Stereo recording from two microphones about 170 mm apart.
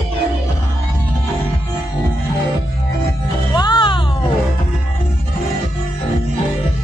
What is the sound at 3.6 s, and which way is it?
Music, 30° left (ahead or behind).